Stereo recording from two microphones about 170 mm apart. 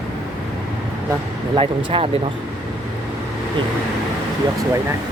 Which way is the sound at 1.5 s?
30° right (ahead or behind).